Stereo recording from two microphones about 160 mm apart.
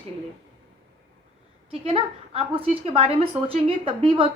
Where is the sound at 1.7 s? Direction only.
35° right (ahead or behind).